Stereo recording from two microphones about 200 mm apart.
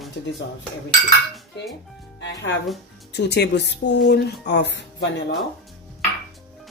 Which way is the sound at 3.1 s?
55° left (ahead or behind).